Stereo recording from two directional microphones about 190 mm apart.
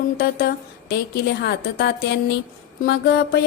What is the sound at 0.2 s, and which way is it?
A woman's voice, 55° left (ahead or behind).